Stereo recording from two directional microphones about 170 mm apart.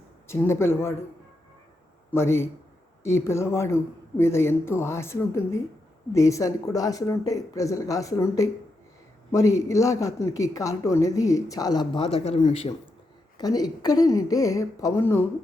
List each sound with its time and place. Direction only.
0.3 s speech: 15° left (ahead or behind)
2.0 s a man's voice: 15° left (ahead or behind); by 12.7 s 35° left (ahead or behind)
13.4 s a woman's voice: 20° left (ahead or behind)